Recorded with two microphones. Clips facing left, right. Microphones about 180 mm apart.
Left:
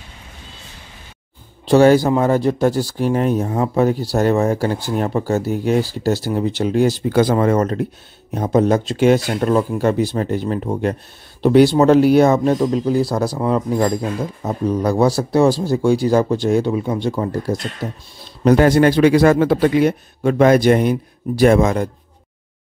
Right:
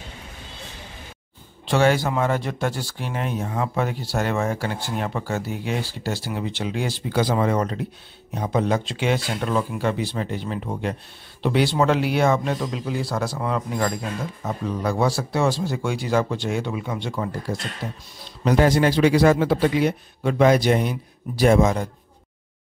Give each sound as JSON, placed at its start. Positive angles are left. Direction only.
{"t": 1.7, "sound": "speech", "side_deg": 40}
{"t": 18.4, "sound": "a man's voice", "side_deg": 55}